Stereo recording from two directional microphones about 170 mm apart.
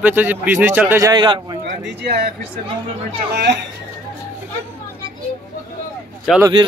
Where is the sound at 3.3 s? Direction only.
85° right.